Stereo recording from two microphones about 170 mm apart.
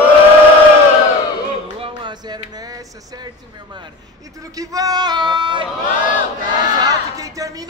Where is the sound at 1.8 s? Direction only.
30° right (ahead or behind).